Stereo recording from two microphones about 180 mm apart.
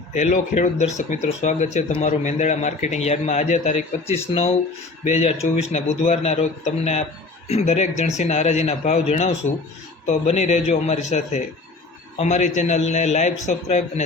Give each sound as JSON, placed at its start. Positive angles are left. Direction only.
{"t": 0.1, "sound": "a man's voice", "side_deg": 40}
{"t": 7.4, "sound": "a man's voice", "side_deg": 35}